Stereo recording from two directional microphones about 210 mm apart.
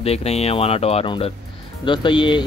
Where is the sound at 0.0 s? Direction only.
30° left (ahead or behind).